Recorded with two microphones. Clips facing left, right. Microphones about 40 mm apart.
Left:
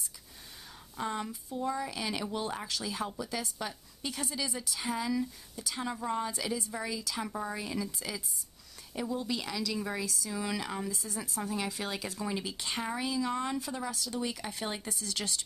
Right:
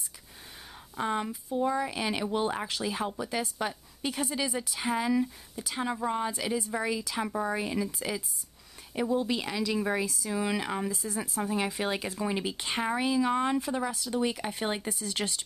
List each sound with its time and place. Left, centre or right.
0.9 s speech: right